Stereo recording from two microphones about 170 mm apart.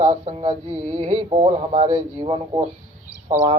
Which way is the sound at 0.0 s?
40° right (ahead or behind).